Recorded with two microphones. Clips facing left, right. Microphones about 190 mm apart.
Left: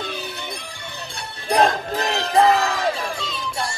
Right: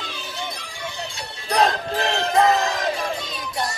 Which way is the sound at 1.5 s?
35° left (ahead or behind).